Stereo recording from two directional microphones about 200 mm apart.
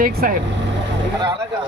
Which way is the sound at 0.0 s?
45° right (ahead or behind).